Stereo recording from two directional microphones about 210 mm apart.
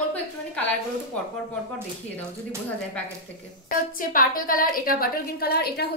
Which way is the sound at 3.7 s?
40° left (ahead or behind).